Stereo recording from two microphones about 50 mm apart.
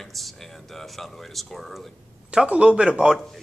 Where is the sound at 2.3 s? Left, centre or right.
Right.